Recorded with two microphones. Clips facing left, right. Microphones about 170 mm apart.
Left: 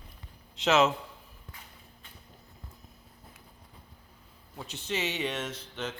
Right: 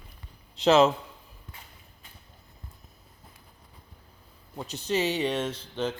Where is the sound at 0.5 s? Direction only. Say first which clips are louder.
Right 5 dB; 35° right (ahead or behind).